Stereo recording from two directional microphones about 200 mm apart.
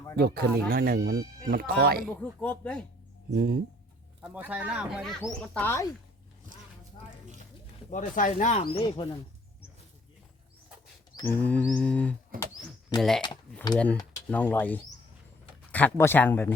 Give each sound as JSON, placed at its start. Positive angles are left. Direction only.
{"t": 0.2, "sound": "speech", "side_deg": -50}
{"t": 2.0, "sound": "mantra", "side_deg": 5}
{"t": 3.2, "sound": "speech", "side_deg": -50}
{"t": 4.2, "sound": "speech", "side_deg": -10}
{"t": 7.9, "sound": "speech", "side_deg": 40}
{"t": 8.6, "sound": "speech", "side_deg": 25}
{"t": 11.3, "sound": "mantra", "side_deg": 5}
{"t": 12.3, "sound": "speech", "side_deg": -45}
{"t": 13.0, "sound": "speech", "side_deg": 0}
{"t": 14.3, "sound": "mantra", "side_deg": 10}